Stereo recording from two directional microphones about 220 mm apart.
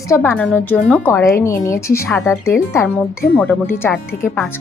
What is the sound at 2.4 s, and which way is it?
A woman's voice, 10° left (ahead or behind).